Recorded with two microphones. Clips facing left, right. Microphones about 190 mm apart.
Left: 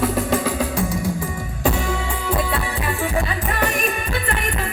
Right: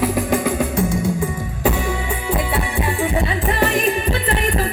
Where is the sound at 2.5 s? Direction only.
20° right (ahead or behind).